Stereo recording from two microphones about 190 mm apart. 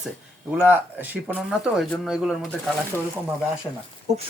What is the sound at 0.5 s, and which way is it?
Speech, 10° right (ahead or behind).